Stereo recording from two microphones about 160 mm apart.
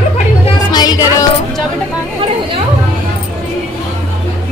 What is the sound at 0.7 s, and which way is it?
Music, 25° left (ahead or behind).